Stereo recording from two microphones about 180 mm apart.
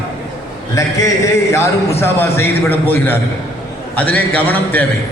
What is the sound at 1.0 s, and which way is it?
A man's voice, 15° left (ahead or behind).